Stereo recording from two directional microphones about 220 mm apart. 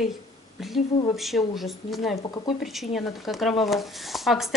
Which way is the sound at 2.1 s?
20° left (ahead or behind).